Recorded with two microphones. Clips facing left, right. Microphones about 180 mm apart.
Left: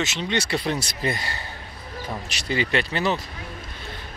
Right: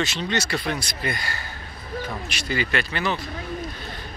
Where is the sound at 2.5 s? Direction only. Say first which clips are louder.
Left 2 dB; 25° left (ahead or behind).